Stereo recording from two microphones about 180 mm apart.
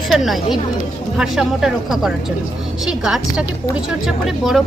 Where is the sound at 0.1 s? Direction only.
Centre (ahead or behind).